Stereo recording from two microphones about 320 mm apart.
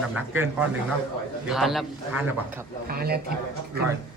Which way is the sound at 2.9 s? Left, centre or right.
Right.